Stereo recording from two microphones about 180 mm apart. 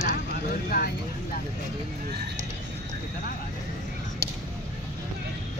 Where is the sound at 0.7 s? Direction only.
55° left (ahead or behind).